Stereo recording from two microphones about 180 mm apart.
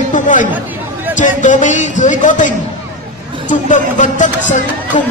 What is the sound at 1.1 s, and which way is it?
Speech, 45° left (ahead or behind).